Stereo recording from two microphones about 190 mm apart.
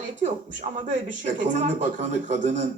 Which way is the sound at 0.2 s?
40° right (ahead or behind).